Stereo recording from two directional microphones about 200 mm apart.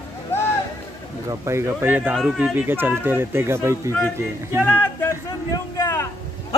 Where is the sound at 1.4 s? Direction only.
15° right (ahead or behind).